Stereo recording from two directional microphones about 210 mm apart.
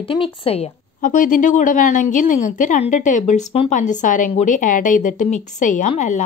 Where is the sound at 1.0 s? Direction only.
40° left (ahead or behind).